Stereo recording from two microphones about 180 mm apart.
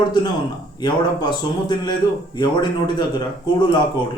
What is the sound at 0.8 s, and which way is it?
A man's voice, 25° left (ahead or behind).